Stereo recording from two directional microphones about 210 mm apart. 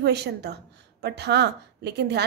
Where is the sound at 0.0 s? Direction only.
50° right (ahead or behind).